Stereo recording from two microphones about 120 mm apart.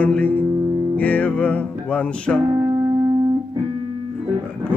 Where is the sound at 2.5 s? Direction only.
25° right (ahead or behind).